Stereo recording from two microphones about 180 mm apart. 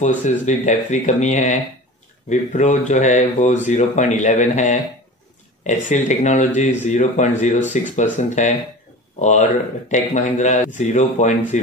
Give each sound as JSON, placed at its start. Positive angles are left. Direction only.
{"t": 0.0, "sound": "speech", "side_deg": 40}